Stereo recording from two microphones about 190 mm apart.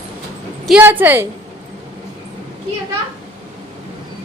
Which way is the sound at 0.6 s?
10° right (ahead or behind).